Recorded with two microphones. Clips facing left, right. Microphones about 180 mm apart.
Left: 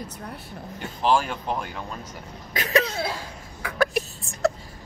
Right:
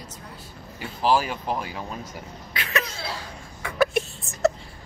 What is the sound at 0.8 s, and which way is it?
Speech, 5° right (ahead or behind).